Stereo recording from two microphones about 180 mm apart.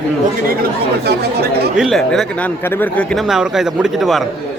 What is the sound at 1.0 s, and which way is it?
Speech, 65° right (ahead or behind).